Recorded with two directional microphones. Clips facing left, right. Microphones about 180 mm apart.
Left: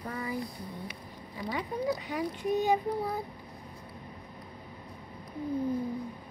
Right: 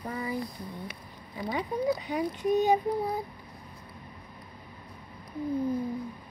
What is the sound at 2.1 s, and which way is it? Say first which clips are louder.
Child singing: right 3 dB; 20° right (ahead or behind).